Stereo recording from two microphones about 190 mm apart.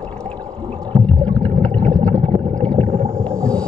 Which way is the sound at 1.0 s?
5° left (ahead or behind).